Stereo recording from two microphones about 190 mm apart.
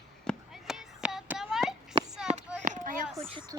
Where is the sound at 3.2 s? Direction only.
25° right (ahead or behind).